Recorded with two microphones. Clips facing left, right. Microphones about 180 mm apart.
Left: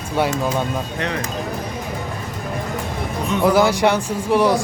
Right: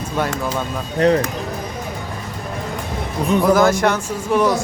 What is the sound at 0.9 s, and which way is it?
Speech, 35° right (ahead or behind).